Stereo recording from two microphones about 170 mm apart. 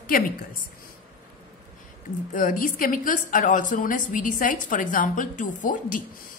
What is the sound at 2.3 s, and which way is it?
A woman's voice, 50° left (ahead or behind).